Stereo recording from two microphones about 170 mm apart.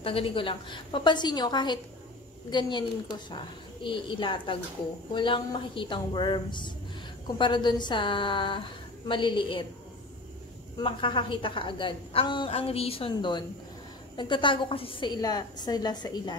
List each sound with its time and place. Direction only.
0.0 s a woman's voice: 30° left (ahead or behind)
10.8 s a woman's voice: 30° left (ahead or behind)